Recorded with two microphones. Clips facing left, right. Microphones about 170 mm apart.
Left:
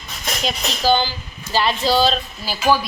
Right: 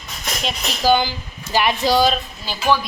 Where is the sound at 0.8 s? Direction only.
15° right (ahead or behind).